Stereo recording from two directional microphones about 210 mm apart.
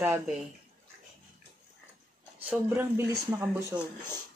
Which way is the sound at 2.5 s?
10° right (ahead or behind).